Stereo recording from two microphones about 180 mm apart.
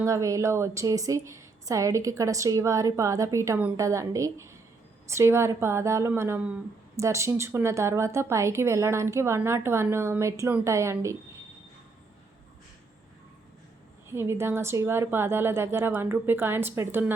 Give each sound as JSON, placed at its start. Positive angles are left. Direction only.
{"t": 0.0, "sound": "speech", "side_deg": -15}
{"t": 14.1, "sound": "speech", "side_deg": -15}